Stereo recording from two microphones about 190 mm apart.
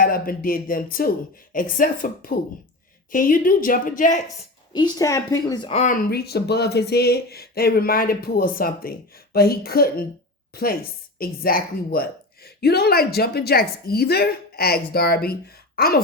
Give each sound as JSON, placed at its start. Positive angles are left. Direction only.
{"t": 0.0, "sound": "a woman's voice", "side_deg": 50}
{"t": 4.7, "sound": "a woman's voice", "side_deg": 20}
{"t": 5.6, "sound": "speech", "side_deg": 35}
{"t": 5.9, "sound": "a woman's voice", "side_deg": 50}